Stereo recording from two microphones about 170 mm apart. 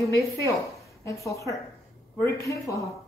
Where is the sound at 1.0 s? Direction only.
20° left (ahead or behind).